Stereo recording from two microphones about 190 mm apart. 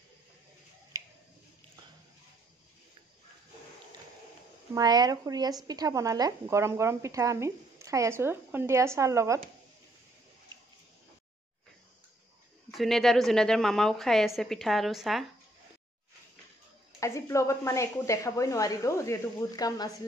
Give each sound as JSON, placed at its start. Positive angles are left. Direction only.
{"t": 0.9, "sound": "a sound", "side_deg": -20}
{"t": 4.7, "sound": "speech", "side_deg": -20}
{"t": 12.7, "sound": "a woman's voice", "side_deg": 0}
{"t": 17.0, "sound": "speech", "side_deg": 15}